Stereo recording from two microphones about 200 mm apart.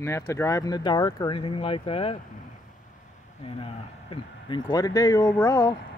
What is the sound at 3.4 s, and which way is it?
Speech, 25° left (ahead or behind).